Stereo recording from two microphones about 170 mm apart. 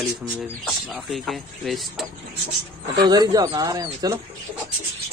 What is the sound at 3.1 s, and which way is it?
Speech, 25° right (ahead or behind).